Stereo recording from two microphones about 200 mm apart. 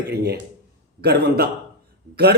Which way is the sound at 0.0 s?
55° right (ahead or behind).